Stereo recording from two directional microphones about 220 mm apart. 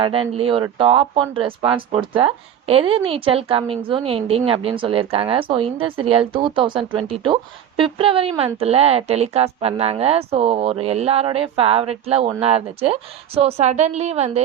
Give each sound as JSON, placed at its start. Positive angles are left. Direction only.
{"t": 0.0, "sound": "speech", "side_deg": -25}